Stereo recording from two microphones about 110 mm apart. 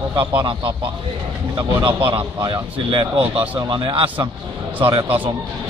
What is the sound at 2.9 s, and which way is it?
Speech, 60° right (ahead or behind).